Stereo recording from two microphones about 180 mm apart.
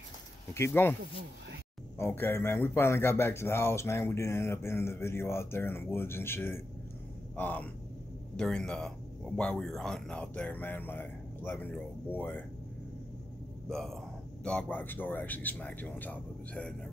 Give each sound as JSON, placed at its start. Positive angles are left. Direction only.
{"t": 0.6, "sound": "speech", "side_deg": 15}
{"t": 2.0, "sound": "speech", "side_deg": 10}
{"t": 13.7, "sound": "speech", "side_deg": 0}